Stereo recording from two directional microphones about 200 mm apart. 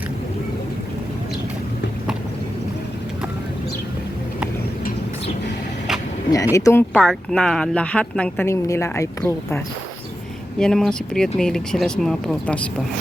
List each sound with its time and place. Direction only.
6.3 s speech: 15° left (ahead or behind)
6.9 s a woman's voice: 5° left (ahead or behind)
10.6 s a woman's voice: 5° left (ahead or behind)